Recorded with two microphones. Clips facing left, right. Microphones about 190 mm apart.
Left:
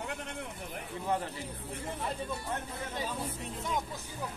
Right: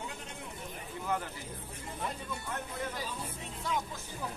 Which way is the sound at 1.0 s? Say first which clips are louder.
Left 2 dB; 30° left (ahead or behind).